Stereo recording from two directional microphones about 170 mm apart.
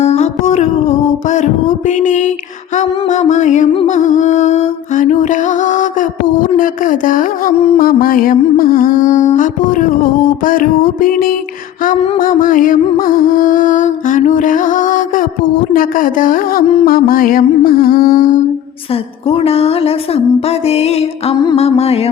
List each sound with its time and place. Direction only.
0.0 s music: 40° left (ahead or behind)
19.3 s music: 35° left (ahead or behind)